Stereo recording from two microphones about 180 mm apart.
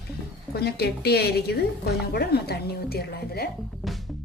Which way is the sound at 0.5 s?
65° left (ahead or behind).